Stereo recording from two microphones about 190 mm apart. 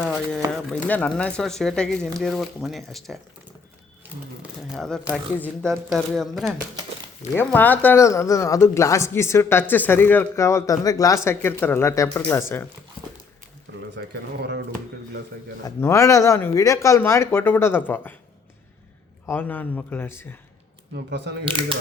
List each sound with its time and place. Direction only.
0.0 s speech: centre (ahead or behind)
4.7 s speech: centre (ahead or behind)
13.9 s speech: 60° right (ahead or behind)
15.6 s speech: 15° left (ahead or behind)
19.2 s speech: 10° left (ahead or behind)
20.9 s speech: 65° right (ahead or behind)
21.4 s speech: 25° right (ahead or behind)